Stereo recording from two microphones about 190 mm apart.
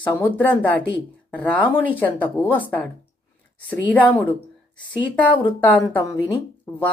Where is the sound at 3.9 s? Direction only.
10° left (ahead or behind).